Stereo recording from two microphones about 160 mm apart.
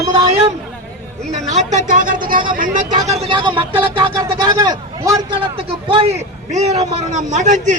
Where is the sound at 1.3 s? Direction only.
45° right (ahead or behind).